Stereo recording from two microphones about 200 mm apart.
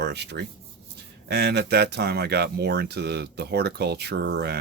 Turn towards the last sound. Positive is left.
turn(degrees=-55)  # may be behind; listen again after turning